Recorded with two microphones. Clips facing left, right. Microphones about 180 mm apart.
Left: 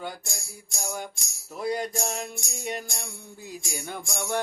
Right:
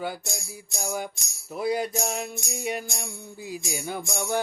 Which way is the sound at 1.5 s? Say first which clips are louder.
Right 2 dB; 5° right (ahead or behind).